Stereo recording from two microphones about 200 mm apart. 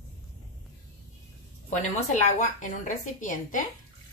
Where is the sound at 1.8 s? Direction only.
35° left (ahead or behind).